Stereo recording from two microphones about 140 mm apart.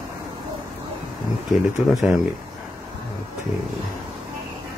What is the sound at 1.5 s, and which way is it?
Speech, centre (ahead or behind).